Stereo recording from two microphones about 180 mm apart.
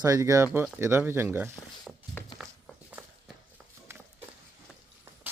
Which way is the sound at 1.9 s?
Centre (ahead or behind).